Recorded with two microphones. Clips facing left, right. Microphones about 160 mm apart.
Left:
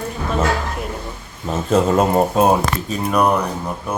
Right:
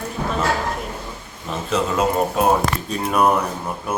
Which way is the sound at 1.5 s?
40° left (ahead or behind).